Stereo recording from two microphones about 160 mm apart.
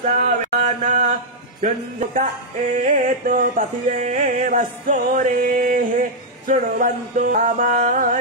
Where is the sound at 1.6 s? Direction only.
55° right (ahead or behind).